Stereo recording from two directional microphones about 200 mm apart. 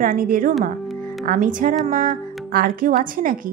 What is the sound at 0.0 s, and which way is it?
Speech, 45° right (ahead or behind).